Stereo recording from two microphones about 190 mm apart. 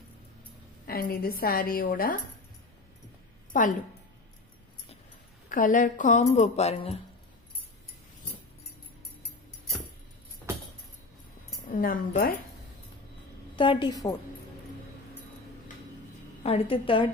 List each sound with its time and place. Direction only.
0.8 s a woman's voice: 55° left (ahead or behind)
3.5 s a woman's voice: 45° left (ahead or behind)
5.5 s speech: 45° left (ahead or behind)
11.7 s a woman's voice: 45° left (ahead or behind)
13.6 s a woman's voice: 25° left (ahead or behind)
16.4 s a woman's voice: 30° left (ahead or behind)